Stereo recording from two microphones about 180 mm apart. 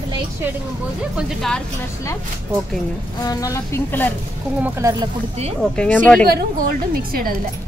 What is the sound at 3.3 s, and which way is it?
Speech, 20° left (ahead or behind).